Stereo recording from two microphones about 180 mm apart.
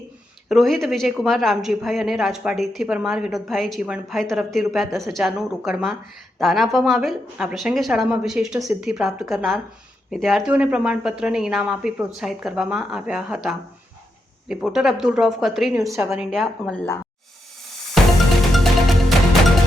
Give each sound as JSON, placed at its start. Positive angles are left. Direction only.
{"t": 0.4, "sound": "a woman's voice", "side_deg": 0}
{"t": 15.8, "sound": "a woman's voice", "side_deg": -15}
{"t": 16.0, "sound": "a woman's voice", "side_deg": 0}
{"t": 18.0, "sound": "music", "side_deg": 0}